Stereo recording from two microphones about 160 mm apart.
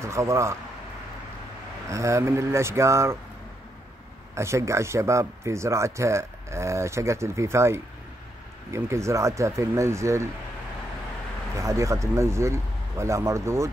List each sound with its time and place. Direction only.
0.0 s speech: 20° right (ahead or behind)
1.9 s speech: 20° right (ahead or behind)
4.4 s speech: 15° right (ahead or behind)
11.5 s speech: 20° right (ahead or behind)